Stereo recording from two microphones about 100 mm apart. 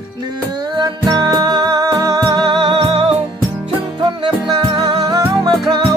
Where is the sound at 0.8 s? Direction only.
45° right (ahead or behind).